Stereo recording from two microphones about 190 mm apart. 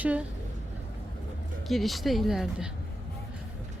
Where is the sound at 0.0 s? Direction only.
5° right (ahead or behind).